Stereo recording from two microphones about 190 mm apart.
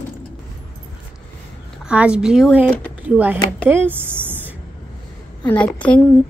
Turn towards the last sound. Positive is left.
turn(degrees=5)  # may be behind; listen again after turning